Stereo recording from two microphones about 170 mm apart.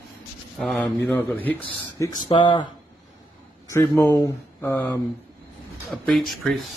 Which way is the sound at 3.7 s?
15° left (ahead or behind).